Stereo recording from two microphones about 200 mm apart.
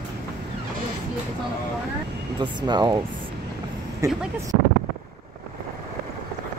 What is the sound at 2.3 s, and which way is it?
Speech, 20° right (ahead or behind).